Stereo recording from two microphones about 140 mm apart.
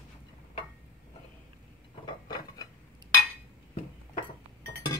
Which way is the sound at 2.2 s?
25° left (ahead or behind).